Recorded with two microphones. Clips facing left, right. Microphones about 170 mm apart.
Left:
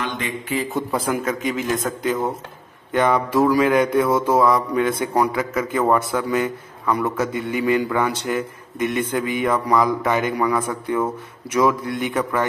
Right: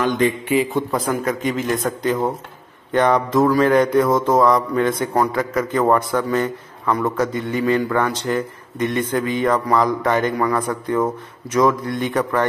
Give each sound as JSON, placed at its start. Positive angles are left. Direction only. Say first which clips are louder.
{"t": 0.0, "sound": "a man's voice", "louder": "right 9 dB", "side_deg": -40}
{"t": 0.7, "sound": "a man's voice", "louder": "right 2 dB", "side_deg": 5}